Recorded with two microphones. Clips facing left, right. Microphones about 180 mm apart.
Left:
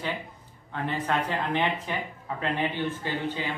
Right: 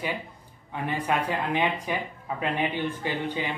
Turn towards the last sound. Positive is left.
turn(degrees=-15)  # may be behind; listen again after turning